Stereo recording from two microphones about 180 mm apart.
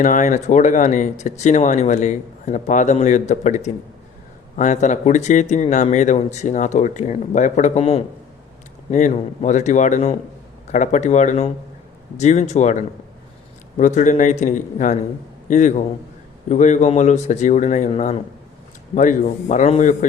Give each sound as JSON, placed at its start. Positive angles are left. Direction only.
{"t": 0.0, "sound": "speech", "side_deg": 45}